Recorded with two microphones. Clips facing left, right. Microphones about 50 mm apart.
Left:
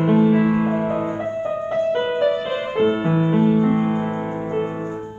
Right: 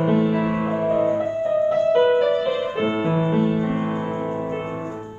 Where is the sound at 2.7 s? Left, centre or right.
Centre.